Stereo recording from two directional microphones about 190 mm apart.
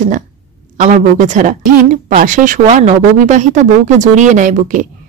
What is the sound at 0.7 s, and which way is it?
A woman's voice, 40° right (ahead or behind).